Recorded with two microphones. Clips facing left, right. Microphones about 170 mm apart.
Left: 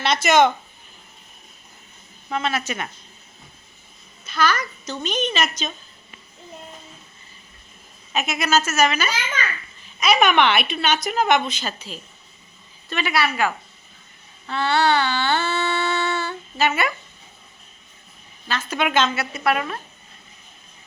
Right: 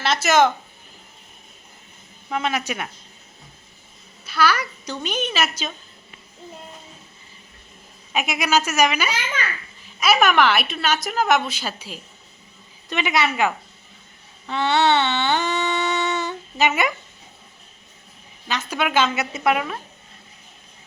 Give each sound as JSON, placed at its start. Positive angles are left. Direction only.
{"t": 0.0, "sound": "speech", "side_deg": -5}
{"t": 2.3, "sound": "a woman's voice", "side_deg": -15}
{"t": 4.3, "sound": "a woman's voice", "side_deg": -10}
{"t": 8.1, "sound": "a woman's voice", "side_deg": -10}
{"t": 14.4, "sound": "a sound", "side_deg": -20}
{"t": 18.4, "sound": "a woman's voice", "side_deg": -15}